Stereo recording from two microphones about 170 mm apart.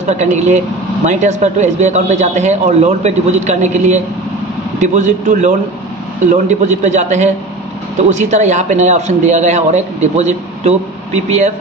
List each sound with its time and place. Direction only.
0.0 s a man's voice: 45° right (ahead or behind)